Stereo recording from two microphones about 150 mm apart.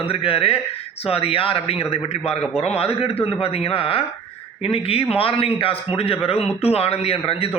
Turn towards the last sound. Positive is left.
turn(degrees=40)  # may be behind; listen again after turning